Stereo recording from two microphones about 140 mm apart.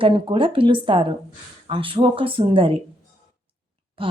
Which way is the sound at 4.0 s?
40° right (ahead or behind).